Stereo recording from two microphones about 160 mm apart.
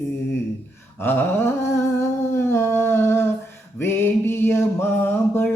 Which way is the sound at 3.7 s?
15° left (ahead or behind).